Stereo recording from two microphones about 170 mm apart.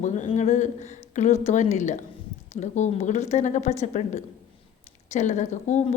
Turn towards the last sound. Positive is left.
turn(degrees=45)  # may be behind; listen again after turning